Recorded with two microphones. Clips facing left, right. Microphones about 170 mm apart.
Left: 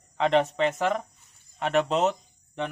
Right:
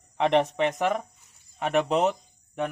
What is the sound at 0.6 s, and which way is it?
Speech, 10° right (ahead or behind).